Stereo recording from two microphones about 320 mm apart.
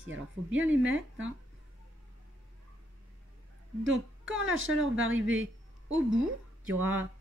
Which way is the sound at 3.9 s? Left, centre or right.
Right.